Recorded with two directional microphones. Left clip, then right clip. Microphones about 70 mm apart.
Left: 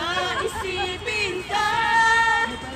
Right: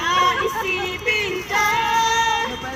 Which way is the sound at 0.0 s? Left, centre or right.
Left.